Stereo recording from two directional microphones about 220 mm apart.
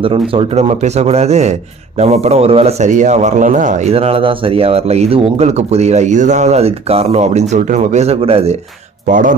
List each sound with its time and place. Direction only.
0.0 s speech: 25° right (ahead or behind)